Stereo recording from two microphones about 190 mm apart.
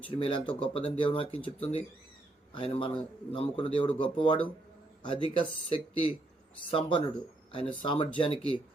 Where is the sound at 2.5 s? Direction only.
30° left (ahead or behind).